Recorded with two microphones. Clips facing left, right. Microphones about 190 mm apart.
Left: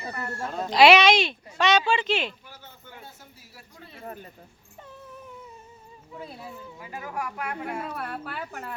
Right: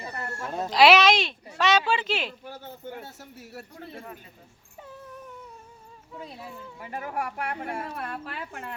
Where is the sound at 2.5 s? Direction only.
55° right (ahead or behind).